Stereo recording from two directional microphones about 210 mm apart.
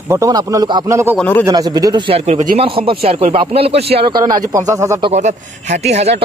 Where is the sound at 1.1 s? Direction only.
10° left (ahead or behind).